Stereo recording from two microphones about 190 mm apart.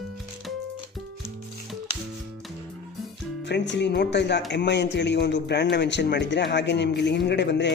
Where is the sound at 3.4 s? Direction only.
65° left (ahead or behind).